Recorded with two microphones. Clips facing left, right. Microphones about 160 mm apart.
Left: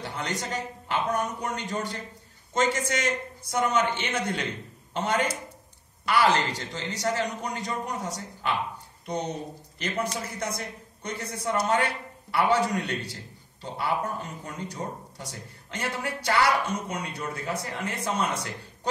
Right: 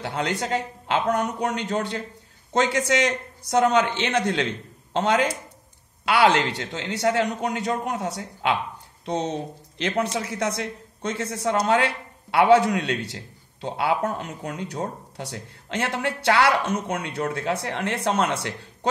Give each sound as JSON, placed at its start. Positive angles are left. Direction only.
{"t": 0.0, "sound": "speech", "side_deg": -75}